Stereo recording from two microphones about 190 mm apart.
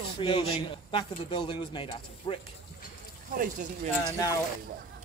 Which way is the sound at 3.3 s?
40° right (ahead or behind).